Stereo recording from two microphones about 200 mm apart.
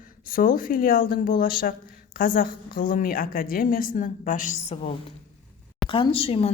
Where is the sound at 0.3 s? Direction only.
45° left (ahead or behind).